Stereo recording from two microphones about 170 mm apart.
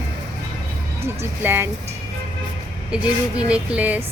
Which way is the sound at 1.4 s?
15° right (ahead or behind).